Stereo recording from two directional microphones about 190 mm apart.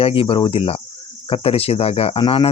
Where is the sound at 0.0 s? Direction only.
30° left (ahead or behind).